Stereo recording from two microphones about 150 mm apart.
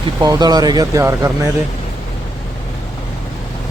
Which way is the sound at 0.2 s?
25° right (ahead or behind).